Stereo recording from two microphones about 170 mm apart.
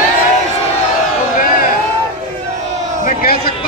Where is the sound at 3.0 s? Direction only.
60° left (ahead or behind).